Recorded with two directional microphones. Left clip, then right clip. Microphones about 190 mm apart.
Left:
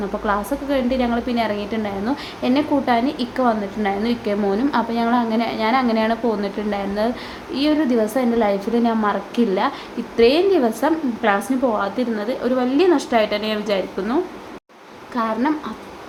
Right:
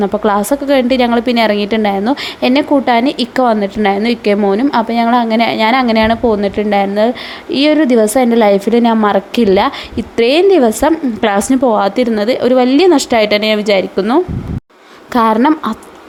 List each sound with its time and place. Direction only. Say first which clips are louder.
0.0 s a woman's voice: right 9 dB; 50° right (ahead or behind)